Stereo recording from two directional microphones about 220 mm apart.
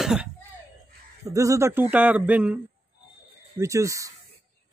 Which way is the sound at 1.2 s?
15° right (ahead or behind).